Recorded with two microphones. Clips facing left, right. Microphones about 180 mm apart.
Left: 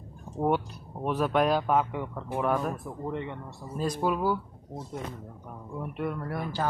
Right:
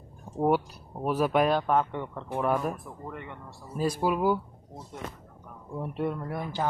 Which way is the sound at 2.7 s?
25° left (ahead or behind).